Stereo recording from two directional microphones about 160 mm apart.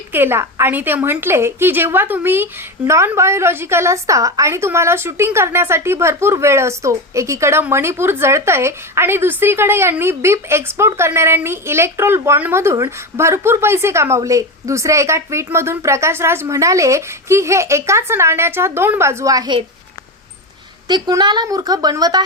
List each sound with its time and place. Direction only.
0.1 s a woman's voice: 15° right (ahead or behind)
20.8 s a woman's voice: 25° right (ahead or behind)